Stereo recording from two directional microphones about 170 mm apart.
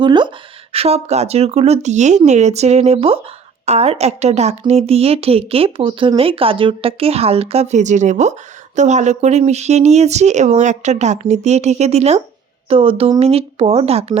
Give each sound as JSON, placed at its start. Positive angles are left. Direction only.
{"t": 0.0, "sound": "a woman's voice", "side_deg": -25}